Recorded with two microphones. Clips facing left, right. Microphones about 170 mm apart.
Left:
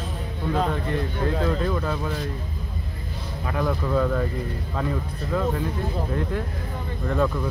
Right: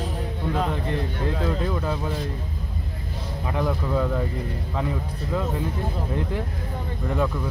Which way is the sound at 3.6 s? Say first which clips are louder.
Left 1 dB; 15° right (ahead or behind).